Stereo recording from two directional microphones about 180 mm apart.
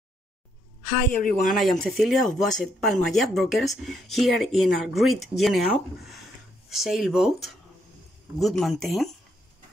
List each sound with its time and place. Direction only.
1.1 s speech: 45° left (ahead or behind)
1.5 s speech: centre (ahead or behind)